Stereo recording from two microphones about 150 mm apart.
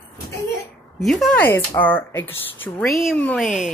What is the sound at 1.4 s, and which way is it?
Speech, 10° left (ahead or behind).